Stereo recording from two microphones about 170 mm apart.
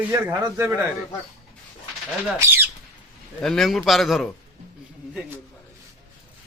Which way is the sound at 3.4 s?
Centre (ahead or behind).